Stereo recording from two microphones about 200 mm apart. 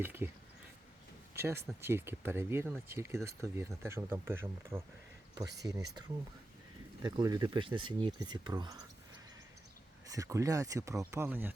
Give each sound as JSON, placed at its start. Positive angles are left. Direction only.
{"t": 0.0, "sound": "speech", "side_deg": -10}
{"t": 1.4, "sound": "speech", "side_deg": -10}
{"t": 10.1, "sound": "speech", "side_deg": -15}